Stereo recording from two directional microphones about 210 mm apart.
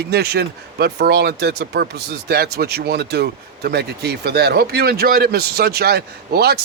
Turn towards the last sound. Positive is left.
turn(degrees=-50)  # may be behind; listen again after turning